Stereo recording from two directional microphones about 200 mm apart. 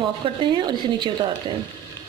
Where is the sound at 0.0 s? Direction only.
25° right (ahead or behind).